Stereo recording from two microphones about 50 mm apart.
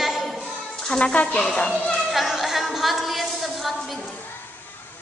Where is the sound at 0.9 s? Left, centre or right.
Left.